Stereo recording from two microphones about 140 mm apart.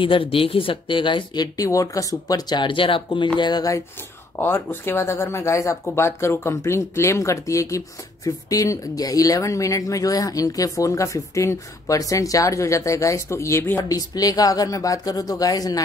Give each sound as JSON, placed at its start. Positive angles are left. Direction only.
{"t": 0.0, "sound": "speech", "side_deg": 40}
{"t": 4.4, "sound": "speech", "side_deg": 15}